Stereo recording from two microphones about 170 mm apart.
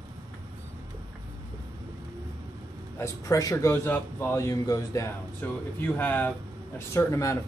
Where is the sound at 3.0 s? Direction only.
20° left (ahead or behind).